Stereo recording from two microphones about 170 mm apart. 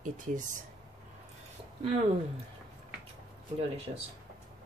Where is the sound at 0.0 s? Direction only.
50° right (ahead or behind).